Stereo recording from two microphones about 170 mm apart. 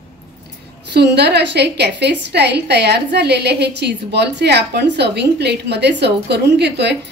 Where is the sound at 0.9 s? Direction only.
85° right.